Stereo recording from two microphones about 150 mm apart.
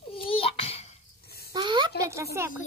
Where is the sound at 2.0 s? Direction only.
20° right (ahead or behind).